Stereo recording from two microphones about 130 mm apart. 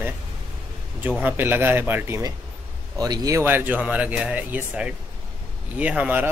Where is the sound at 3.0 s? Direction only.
25° right (ahead or behind).